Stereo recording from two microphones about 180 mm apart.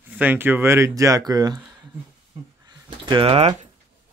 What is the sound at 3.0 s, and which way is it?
Speech, 30° right (ahead or behind).